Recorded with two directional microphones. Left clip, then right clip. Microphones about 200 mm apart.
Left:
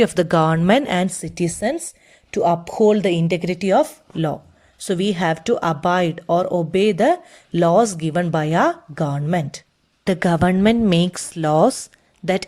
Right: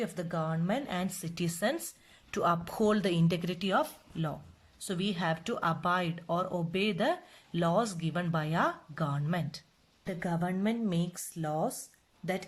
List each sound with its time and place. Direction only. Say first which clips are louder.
0.0 s speech: left 19 dB; 45° left (ahead or behind)
10.1 s speech: left 17 dB; 50° left (ahead or behind)